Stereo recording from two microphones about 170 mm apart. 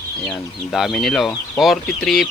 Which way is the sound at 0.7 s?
Centre (ahead or behind).